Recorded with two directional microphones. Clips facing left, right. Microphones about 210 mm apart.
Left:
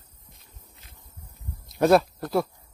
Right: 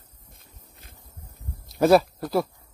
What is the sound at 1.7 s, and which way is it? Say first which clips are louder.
Speech: right 1 dB; centre (ahead or behind).